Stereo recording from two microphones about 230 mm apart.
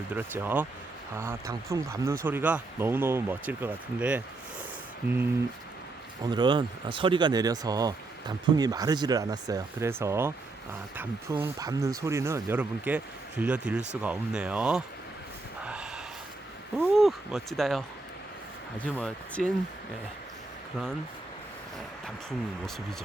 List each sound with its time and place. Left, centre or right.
0.1 s speech: centre
6.3 s speech: centre
15.6 s a sound: centre
16.8 s speech: centre